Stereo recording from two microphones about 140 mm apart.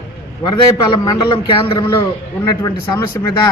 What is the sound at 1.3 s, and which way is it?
Speech, 40° left (ahead or behind).